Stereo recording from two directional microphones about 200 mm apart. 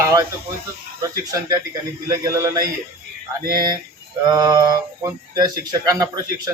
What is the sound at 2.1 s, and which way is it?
Speech, 15° right (ahead or behind).